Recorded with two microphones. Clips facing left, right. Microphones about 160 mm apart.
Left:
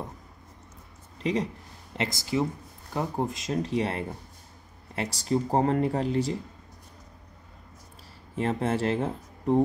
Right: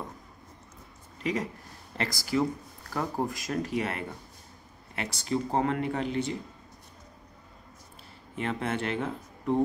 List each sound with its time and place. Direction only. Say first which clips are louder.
2.0 s speech: left 1 dB; 20° left (ahead or behind); by 6.3 s 35° left (ahead or behind)
8.4 s speech: left 4 dB; 35° left (ahead or behind)